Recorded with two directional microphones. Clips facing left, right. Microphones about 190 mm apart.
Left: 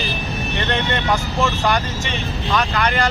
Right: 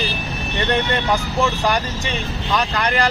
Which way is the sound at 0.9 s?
10° right (ahead or behind).